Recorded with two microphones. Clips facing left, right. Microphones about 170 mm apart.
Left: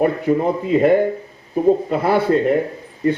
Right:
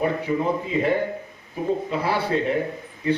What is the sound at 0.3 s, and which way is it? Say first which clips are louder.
Speech: left 9 dB; 50° left (ahead or behind).